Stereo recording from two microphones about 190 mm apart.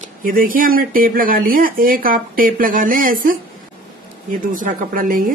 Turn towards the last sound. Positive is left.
turn(degrees=-50)  # may be behind; listen again after turning